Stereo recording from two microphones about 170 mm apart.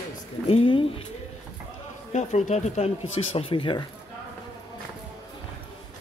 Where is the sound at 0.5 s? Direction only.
35° left (ahead or behind).